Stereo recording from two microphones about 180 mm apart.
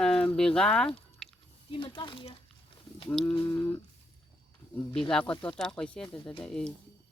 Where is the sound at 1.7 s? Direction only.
25° left (ahead or behind).